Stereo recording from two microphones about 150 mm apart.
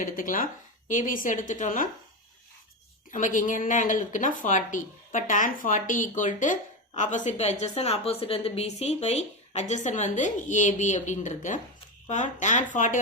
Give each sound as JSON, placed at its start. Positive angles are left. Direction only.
{"t": 0.0, "sound": "speech", "side_deg": 65}
{"t": 3.1, "sound": "speech", "side_deg": 60}